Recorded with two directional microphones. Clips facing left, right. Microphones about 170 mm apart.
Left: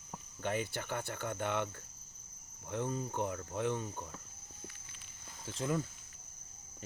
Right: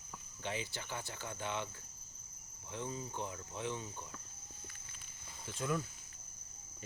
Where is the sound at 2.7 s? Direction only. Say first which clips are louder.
Left 6 dB; 55° left (ahead or behind).